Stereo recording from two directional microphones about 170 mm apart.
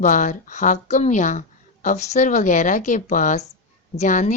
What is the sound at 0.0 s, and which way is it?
A woman's voice, 45° left (ahead or behind).